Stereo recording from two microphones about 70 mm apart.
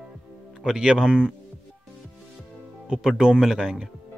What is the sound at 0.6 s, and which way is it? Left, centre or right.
Speech, centre.